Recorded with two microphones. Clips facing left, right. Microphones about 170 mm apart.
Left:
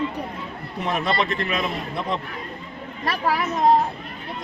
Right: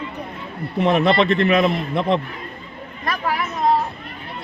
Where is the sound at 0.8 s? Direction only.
60° right (ahead or behind).